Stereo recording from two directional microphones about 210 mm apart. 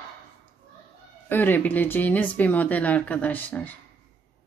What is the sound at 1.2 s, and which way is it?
Speech, 10° left (ahead or behind).